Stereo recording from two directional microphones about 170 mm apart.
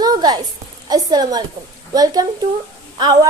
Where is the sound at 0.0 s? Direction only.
25° right (ahead or behind).